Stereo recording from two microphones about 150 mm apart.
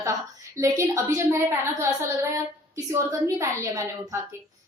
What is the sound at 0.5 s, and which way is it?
A woman's voice, 20° right (ahead or behind).